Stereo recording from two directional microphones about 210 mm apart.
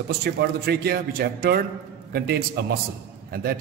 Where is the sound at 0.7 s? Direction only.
50° right (ahead or behind).